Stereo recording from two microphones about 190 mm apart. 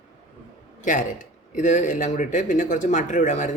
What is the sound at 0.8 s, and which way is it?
A man's voice, 40° left (ahead or behind).